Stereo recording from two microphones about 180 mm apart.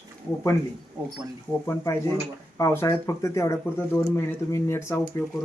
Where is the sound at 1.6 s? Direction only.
15° left (ahead or behind).